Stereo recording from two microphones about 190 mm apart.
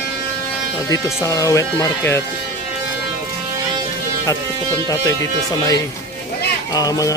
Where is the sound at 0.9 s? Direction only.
15° left (ahead or behind).